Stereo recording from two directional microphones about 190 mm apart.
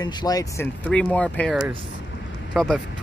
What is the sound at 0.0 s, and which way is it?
Speech, 20° left (ahead or behind).